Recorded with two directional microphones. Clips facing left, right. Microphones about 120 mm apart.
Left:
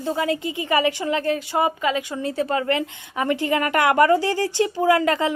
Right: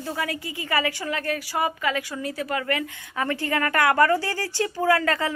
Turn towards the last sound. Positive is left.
turn(degrees=20)  # may be behind; listen again after turning